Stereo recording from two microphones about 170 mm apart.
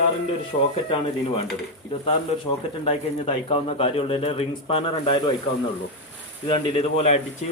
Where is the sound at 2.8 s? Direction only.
35° left (ahead or behind).